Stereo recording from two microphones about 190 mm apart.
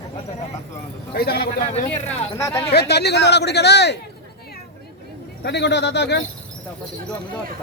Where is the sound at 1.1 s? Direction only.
55° left (ahead or behind).